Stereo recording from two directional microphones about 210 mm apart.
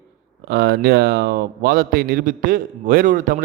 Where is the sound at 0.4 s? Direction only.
50° right (ahead or behind).